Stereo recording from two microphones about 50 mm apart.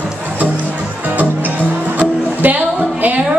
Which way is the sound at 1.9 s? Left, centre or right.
Right.